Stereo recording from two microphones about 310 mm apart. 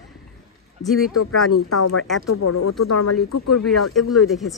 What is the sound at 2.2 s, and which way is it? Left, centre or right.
Speech, left.